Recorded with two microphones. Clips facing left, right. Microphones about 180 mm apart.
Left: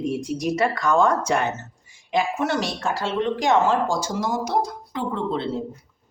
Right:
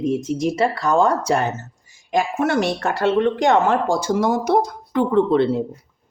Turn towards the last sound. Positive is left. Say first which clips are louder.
# right 9 dB
turn(degrees=-60)  # may be behind; listen again after turning